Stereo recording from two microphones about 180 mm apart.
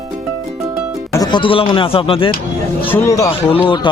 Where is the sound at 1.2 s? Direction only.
25° left (ahead or behind).